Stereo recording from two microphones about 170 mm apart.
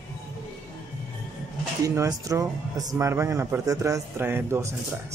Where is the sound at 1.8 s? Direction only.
20° right (ahead or behind).